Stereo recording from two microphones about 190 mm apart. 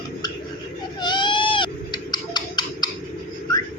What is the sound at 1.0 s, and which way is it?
Owl, 25° left (ahead or behind).